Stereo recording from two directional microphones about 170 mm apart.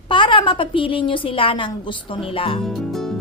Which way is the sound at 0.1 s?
30° left (ahead or behind).